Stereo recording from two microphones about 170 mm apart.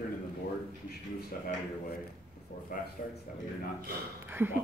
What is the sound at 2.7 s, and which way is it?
Speech, 55° left (ahead or behind).